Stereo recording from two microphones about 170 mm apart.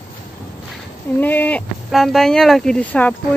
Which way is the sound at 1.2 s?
10° left (ahead or behind).